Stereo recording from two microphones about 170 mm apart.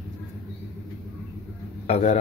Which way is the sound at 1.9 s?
35° left (ahead or behind).